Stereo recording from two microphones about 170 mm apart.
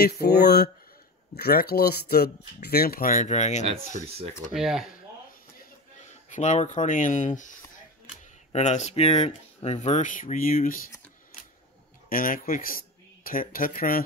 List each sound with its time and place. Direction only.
0.0 s speech: 70° left (ahead or behind); by 3.6 s 45° left (ahead or behind)
4.5 s speech: 5° right (ahead or behind)
6.3 s speech: 45° left (ahead or behind)
12.1 s speech: 55° left (ahead or behind)